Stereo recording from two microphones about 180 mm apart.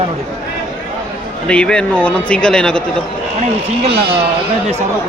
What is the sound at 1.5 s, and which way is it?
Speech, 5° left (ahead or behind).